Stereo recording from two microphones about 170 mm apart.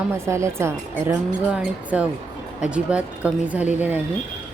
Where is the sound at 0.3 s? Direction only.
15° right (ahead or behind).